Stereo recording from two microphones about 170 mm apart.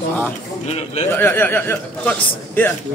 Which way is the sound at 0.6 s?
40° left (ahead or behind).